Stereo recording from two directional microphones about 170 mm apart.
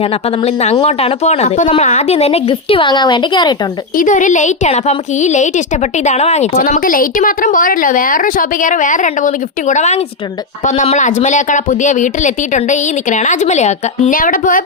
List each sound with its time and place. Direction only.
0.0 s a woman's voice: 35° left (ahead or behind)
3.9 s a woman's voice: 50° left (ahead or behind)